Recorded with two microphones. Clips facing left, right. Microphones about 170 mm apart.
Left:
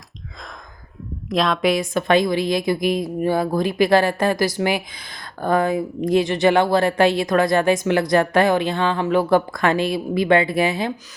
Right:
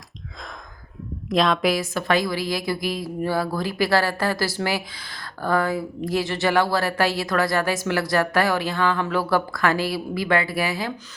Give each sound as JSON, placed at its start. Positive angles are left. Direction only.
{"t": 1.3, "sound": "a woman's voice", "side_deg": 0}
{"t": 1.7, "sound": "speech", "side_deg": 20}